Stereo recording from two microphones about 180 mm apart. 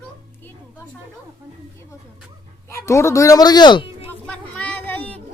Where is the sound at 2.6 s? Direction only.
15° left (ahead or behind).